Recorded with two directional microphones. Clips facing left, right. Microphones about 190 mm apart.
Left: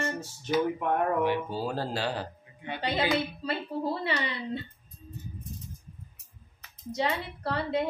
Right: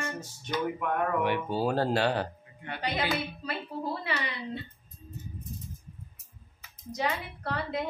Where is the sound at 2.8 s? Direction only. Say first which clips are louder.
Left 3 dB; 25° left (ahead or behind).